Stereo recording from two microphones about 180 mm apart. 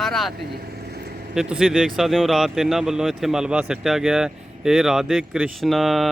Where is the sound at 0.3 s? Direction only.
60° right (ahead or behind).